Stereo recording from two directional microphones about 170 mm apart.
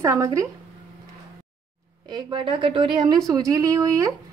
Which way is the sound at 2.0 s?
25° right (ahead or behind).